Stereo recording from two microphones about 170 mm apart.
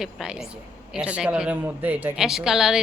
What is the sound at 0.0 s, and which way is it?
A woman's voice, 5° right (ahead or behind).